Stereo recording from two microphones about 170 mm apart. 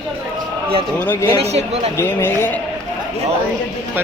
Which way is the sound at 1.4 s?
40° right (ahead or behind).